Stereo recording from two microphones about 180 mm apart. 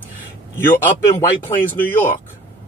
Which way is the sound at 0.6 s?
10° left (ahead or behind).